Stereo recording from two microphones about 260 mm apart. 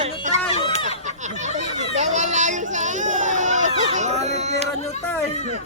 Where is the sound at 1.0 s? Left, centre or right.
Right.